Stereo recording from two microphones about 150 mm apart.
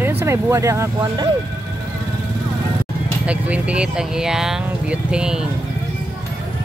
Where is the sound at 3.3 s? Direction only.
10° right (ahead or behind).